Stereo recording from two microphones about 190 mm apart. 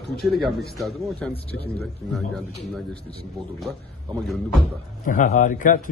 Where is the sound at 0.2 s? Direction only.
Centre (ahead or behind).